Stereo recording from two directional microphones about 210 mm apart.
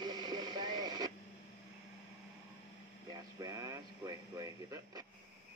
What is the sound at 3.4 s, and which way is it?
Radio, 15° right (ahead or behind).